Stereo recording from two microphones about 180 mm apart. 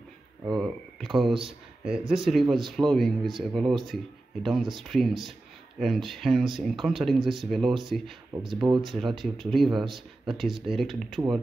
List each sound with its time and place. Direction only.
1.0 s speech: centre (ahead or behind)
8.3 s speech: 20° right (ahead or behind)
8.7 s speech: centre (ahead or behind)